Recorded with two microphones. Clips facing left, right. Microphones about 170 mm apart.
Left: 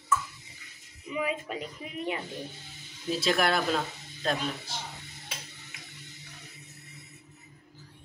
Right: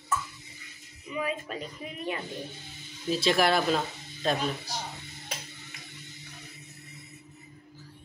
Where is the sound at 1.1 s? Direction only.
20° left (ahead or behind).